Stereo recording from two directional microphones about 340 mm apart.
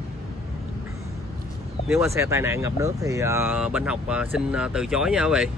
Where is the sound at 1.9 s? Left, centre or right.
Centre.